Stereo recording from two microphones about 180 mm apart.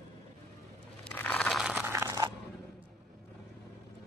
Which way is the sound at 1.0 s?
10° left (ahead or behind).